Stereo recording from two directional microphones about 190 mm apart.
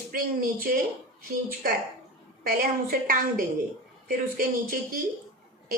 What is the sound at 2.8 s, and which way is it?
Speech, 50° right (ahead or behind).